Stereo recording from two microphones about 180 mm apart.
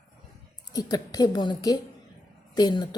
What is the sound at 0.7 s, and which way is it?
A woman's voice, 20° left (ahead or behind).